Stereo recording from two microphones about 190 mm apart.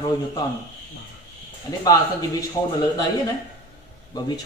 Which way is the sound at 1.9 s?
20° left (ahead or behind).